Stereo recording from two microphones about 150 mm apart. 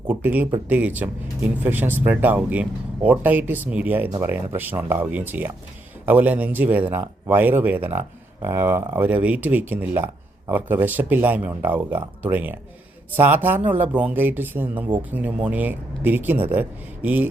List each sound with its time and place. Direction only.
0.1 s speech: 10° right (ahead or behind)